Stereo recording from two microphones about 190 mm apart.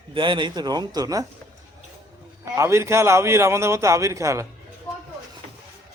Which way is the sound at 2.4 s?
15° right (ahead or behind).